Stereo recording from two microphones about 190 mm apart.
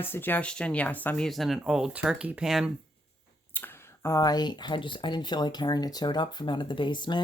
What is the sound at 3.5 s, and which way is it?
Speech, 10° left (ahead or behind).